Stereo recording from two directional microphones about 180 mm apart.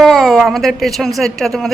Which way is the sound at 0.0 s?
Centre (ahead or behind).